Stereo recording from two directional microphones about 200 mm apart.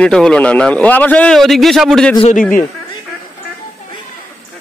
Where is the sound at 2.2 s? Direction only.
35° left (ahead or behind).